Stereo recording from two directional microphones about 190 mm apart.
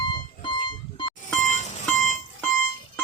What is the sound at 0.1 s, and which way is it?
Music, 25° left (ahead or behind).